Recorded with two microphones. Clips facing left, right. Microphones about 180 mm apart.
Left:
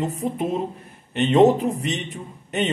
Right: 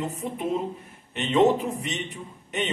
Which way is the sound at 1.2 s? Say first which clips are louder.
Left 5 dB; 40° left (ahead or behind).